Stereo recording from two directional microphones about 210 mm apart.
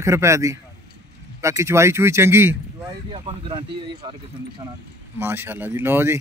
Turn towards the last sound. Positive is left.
turn(degrees=-10)  # may be behind; listen again after turning